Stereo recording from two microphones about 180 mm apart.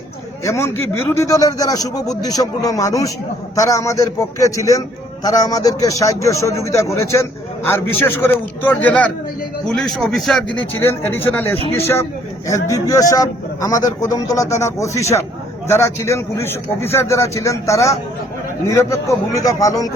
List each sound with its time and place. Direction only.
0.4 s a man's voice: 15° left (ahead or behind)